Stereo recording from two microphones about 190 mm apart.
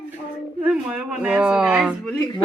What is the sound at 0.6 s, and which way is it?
Speech, 5° right (ahead or behind).